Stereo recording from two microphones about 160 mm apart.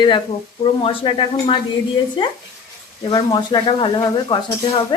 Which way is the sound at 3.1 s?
25° left (ahead or behind).